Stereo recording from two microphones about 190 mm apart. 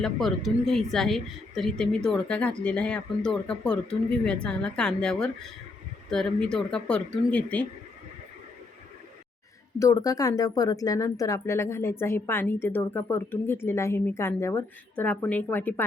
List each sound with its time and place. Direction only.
0.0 s a woman's voice: centre (ahead or behind)
9.7 s a woman's voice: 20° left (ahead or behind)